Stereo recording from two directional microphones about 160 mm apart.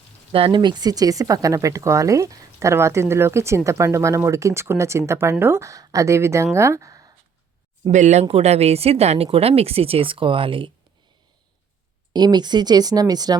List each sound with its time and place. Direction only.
0.3 s speech: 35° right (ahead or behind)
7.9 s speech: 50° right (ahead or behind); by 10.7 s 35° right (ahead or behind)
12.1 s speech: 25° right (ahead or behind)